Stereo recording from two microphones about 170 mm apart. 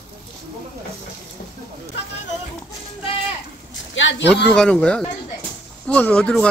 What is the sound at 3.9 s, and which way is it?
Speech, 90° left.